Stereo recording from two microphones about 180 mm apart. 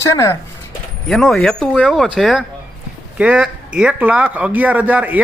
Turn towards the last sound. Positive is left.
turn(degrees=-10)  # may be behind; listen again after turning